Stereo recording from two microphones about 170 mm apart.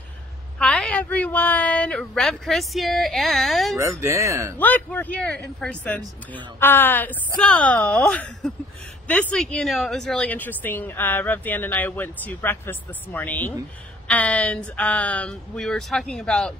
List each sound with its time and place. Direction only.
0.6 s speech: 5° left (ahead or behind)
3.7 s speech: 15° right (ahead or behind)
4.6 s speech: 10° left (ahead or behind)